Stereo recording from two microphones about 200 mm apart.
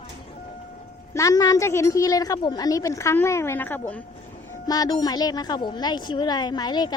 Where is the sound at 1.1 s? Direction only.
15° left (ahead or behind).